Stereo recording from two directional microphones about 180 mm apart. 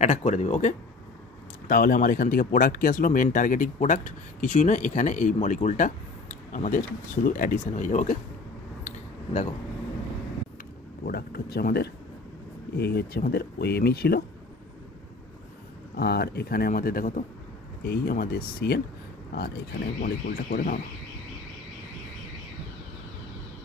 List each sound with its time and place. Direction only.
0.0 s speech: 40° left (ahead or behind)
1.7 s speech: 50° left (ahead or behind)
8.8 s a sound: 40° left (ahead or behind)
11.1 s speech: 60° left (ahead or behind)
16.0 s speech: 65° left (ahead or behind)
17.8 s speech: 60° left (ahead or behind)
20.0 s speech: 55° left (ahead or behind)